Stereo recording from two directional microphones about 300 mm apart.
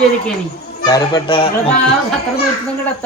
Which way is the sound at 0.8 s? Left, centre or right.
Centre.